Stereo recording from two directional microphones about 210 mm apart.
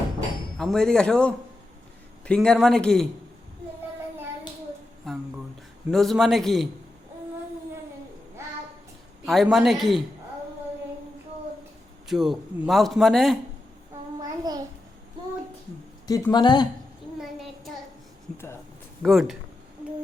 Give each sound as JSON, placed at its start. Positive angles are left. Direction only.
{"t": 0.5, "sound": "a man's voice", "side_deg": 0}
{"t": 5.1, "sound": "a sound", "side_deg": 0}
{"t": 5.9, "sound": "a man's voice", "side_deg": 0}
{"t": 9.2, "sound": "a man's voice", "side_deg": 0}
{"t": 12.0, "sound": "a man's voice", "side_deg": 0}
{"t": 14.2, "sound": "a sound", "side_deg": -20}
{"t": 16.0, "sound": "speech", "side_deg": 15}
{"t": 19.0, "sound": "a man's voice", "side_deg": 0}